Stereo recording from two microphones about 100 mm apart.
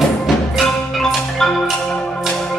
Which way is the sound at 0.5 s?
5° left (ahead or behind).